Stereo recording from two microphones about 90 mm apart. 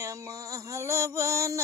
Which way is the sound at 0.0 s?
35° right (ahead or behind).